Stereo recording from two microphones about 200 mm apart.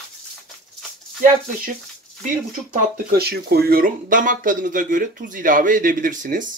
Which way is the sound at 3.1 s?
50° right (ahead or behind).